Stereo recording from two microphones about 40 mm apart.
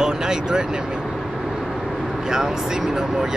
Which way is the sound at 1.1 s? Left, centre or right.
Centre.